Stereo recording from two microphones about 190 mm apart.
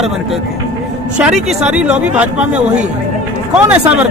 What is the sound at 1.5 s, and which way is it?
Speech, 5° right (ahead or behind).